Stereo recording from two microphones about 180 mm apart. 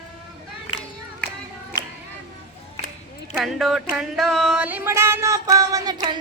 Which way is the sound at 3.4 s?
Centre (ahead or behind).